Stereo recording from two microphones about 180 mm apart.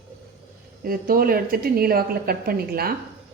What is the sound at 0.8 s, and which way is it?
A woman's voice, 55° right (ahead or behind).